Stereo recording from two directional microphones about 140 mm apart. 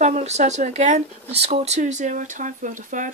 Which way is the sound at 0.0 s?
55° right (ahead or behind).